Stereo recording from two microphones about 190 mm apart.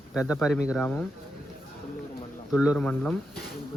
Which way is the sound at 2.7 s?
5° left (ahead or behind).